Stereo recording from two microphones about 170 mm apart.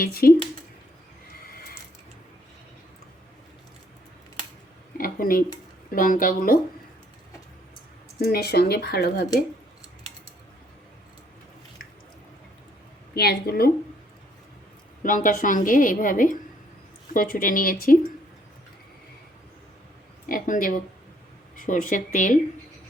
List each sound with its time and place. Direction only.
0.0 s speech: 60° left (ahead or behind)
4.9 s a sound: 55° left (ahead or behind)
5.9 s a woman's voice: 55° left (ahead or behind)
8.2 s speech: 70° left (ahead or behind)
13.1 s speech: 65° left (ahead or behind)
15.0 s a woman's voice: 50° left (ahead or behind)
20.2 s speech: 55° left (ahead or behind)